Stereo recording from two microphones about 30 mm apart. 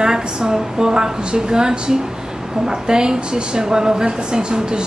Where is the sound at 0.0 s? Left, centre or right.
Right.